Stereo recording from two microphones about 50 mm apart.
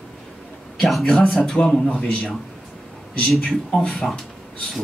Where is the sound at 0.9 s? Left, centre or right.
Centre.